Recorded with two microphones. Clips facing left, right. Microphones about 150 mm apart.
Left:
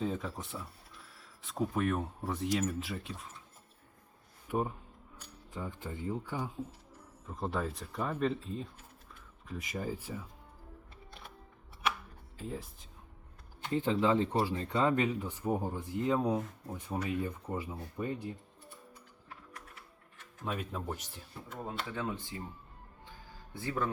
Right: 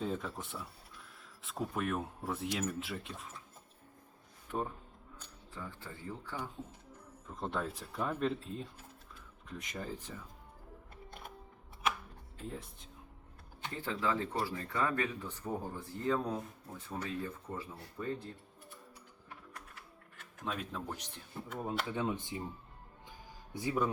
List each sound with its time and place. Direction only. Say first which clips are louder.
0.0 s speech: left 2 dB; centre (ahead or behind)
4.4 s speech: left 4 dB; 10° left (ahead or behind)
7.3 s speech: left 2 dB; 5° left (ahead or behind)
12.4 s speech: left 3 dB; centre (ahead or behind)
13.7 s speech: left 7 dB; 20° left (ahead or behind)
20.4 s speech: left 2 dB; 5° left (ahead or behind)
21.8 s speech: right 2 dB; 20° right (ahead or behind)
23.6 s a man's voice: right 2 dB; 15° right (ahead or behind)